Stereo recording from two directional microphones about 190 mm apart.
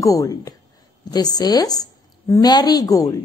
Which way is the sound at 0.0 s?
20° left (ahead or behind).